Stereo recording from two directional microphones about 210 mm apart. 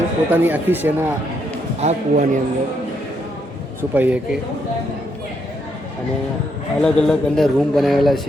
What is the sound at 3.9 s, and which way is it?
Speech, 5° right (ahead or behind).